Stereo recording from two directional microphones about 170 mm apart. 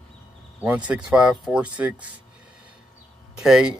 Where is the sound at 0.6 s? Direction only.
10° right (ahead or behind).